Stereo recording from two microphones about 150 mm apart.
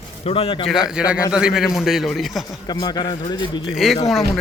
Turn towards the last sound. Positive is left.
turn(degrees=0)  # may be behind; listen again after turning